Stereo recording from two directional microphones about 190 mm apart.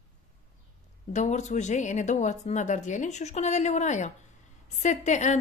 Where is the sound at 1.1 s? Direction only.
40° left (ahead or behind).